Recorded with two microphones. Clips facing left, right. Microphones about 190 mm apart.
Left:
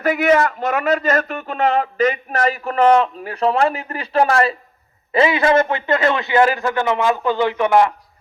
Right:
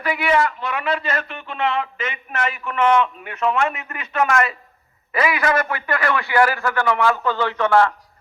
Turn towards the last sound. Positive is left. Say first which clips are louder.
# left 2 dB
turn(degrees=15)  # may be behind; listen again after turning